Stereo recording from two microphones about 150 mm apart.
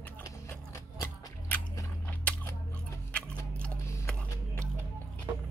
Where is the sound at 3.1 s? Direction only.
10° left (ahead or behind).